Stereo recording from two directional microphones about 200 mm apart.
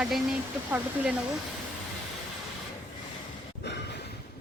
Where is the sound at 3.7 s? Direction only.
60° left (ahead or behind).